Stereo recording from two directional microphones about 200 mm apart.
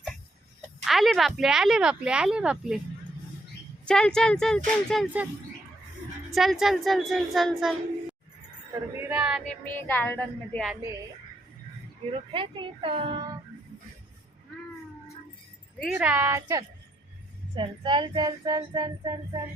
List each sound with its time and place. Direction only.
0.9 s speech: centre (ahead or behind)
3.8 s speech: 5° left (ahead or behind)
6.3 s speech: centre (ahead or behind)
9.5 s music: 10° left (ahead or behind)
12.3 s speech: 25° right (ahead or behind)
16.0 s speech: 10° right (ahead or behind)